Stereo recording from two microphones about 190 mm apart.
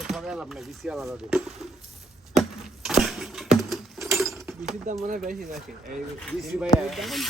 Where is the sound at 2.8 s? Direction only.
Centre (ahead or behind).